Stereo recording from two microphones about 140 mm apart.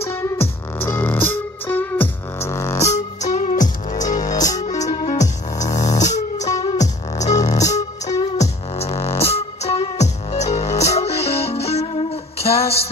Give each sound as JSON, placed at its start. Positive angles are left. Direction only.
{"t": 0.7, "sound": "music", "side_deg": 15}
{"t": 3.2, "sound": "music", "side_deg": 55}
{"t": 4.2, "sound": "music", "side_deg": 25}
{"t": 4.6, "sound": "music", "side_deg": 55}
{"t": 5.9, "sound": "a sound", "side_deg": 55}
{"t": 6.5, "sound": "music", "side_deg": 35}
{"t": 6.8, "sound": "music", "side_deg": 55}
{"t": 7.6, "sound": "music", "side_deg": 25}
{"t": 8.4, "sound": "music", "side_deg": 50}